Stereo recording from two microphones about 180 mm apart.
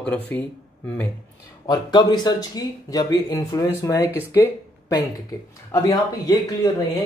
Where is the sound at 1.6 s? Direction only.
20° left (ahead or behind).